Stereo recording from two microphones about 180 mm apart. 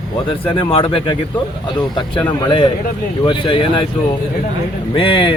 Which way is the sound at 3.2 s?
25° left (ahead or behind).